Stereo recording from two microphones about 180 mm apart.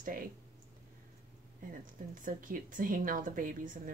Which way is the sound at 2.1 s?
50° right (ahead or behind).